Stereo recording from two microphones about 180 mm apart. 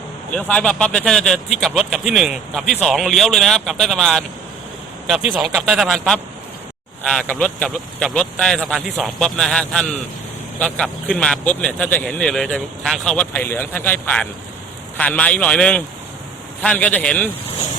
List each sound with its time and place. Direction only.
0.3 s speech: 5° left (ahead or behind)